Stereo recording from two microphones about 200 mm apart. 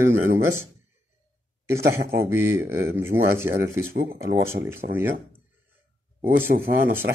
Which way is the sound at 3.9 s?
50° right (ahead or behind).